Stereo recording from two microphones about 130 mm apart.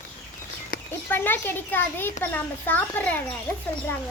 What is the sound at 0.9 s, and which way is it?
A child's voice, 15° left (ahead or behind).